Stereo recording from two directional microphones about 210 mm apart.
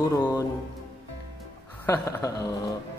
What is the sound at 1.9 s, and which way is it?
Speech, 15° left (ahead or behind).